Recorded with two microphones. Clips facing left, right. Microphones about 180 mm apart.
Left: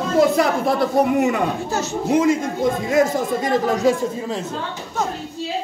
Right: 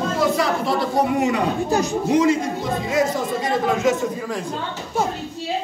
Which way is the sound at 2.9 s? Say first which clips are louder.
Left 1 dB; 50° left (ahead or behind).